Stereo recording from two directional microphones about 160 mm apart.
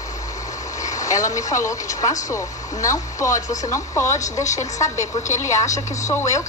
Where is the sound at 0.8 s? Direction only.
20° left (ahead or behind).